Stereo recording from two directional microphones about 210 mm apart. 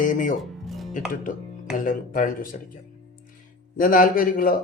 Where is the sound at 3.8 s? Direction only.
40° left (ahead or behind).